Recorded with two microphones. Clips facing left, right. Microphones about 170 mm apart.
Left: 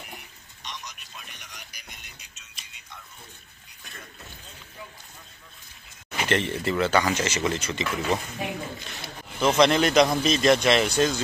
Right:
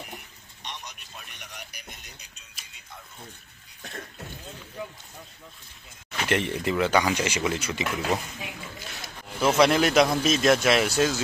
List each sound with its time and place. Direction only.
0.7 s radio: 60° right (ahead or behind)
6.2 s speech: 10° right (ahead or behind)
9.4 s speech: 5° right (ahead or behind)